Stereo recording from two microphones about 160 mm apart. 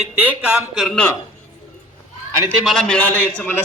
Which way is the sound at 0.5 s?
Centre (ahead or behind).